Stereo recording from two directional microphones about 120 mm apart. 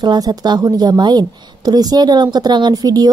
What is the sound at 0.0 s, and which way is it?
A woman's voice, 35° right (ahead or behind).